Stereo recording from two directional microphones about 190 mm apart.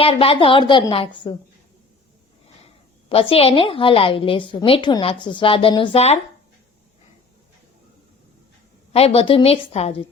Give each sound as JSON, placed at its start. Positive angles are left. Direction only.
{"t": 0.0, "sound": "a woman's voice", "side_deg": 30}
{"t": 3.1, "sound": "a woman's voice", "side_deg": 30}
{"t": 8.9, "sound": "a woman's voice", "side_deg": 30}